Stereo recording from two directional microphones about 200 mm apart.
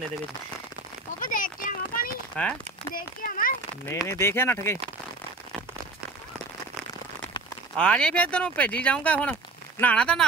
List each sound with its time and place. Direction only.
1.2 s a sound: 40° left (ahead or behind)
2.4 s speech: 5° left (ahead or behind)
2.9 s a child's voice: 45° left (ahead or behind)
4.1 s speech: 10° left (ahead or behind)
7.7 s speech: 5° left (ahead or behind)